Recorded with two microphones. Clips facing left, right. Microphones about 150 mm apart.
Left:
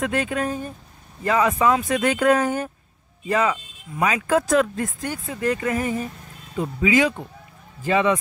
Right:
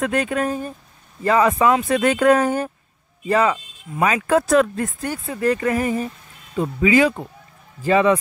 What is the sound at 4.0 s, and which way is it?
Speech, 50° right (ahead or behind).